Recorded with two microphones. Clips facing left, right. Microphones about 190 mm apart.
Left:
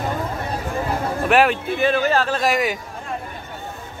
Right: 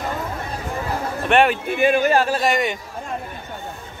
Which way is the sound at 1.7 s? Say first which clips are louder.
Right 2 dB; 15° right (ahead or behind).